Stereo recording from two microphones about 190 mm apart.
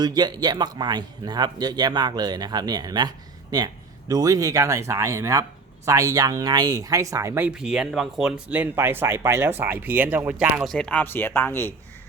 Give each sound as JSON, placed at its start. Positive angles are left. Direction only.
{"t": 0.0, "sound": "speech", "side_deg": -20}
{"t": 4.1, "sound": "speech", "side_deg": -20}